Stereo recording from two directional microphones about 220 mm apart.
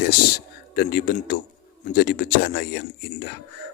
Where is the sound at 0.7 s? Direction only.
45° left (ahead or behind).